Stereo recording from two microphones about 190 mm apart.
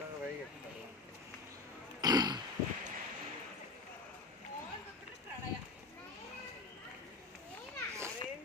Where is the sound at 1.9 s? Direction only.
20° right (ahead or behind).